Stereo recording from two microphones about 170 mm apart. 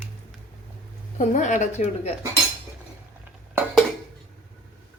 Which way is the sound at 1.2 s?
45° left (ahead or behind).